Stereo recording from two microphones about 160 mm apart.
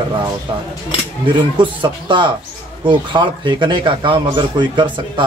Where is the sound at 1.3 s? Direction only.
30° right (ahead or behind).